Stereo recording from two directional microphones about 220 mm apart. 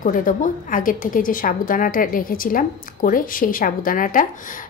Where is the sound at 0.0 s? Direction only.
35° left (ahead or behind).